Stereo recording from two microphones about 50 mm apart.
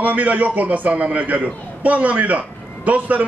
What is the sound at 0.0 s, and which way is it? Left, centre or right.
A man's voice, right.